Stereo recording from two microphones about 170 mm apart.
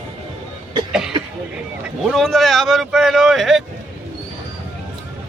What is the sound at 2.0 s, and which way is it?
Speech, centre (ahead or behind).